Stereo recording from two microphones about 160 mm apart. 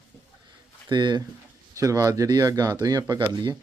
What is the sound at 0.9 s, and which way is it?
Speech, 30° right (ahead or behind).